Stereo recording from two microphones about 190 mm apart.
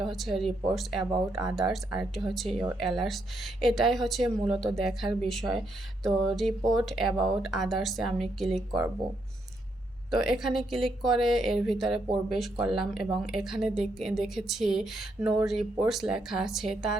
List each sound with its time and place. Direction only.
0.0 s speech: centre (ahead or behind)
10.1 s speech: centre (ahead or behind)